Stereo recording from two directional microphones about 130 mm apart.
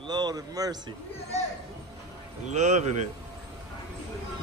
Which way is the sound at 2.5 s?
65° right (ahead or behind).